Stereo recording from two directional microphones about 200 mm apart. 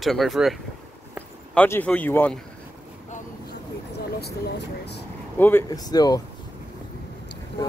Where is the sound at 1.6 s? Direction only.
10° left (ahead or behind).